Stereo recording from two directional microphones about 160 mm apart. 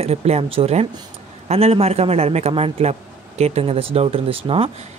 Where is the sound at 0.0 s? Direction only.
40° right (ahead or behind).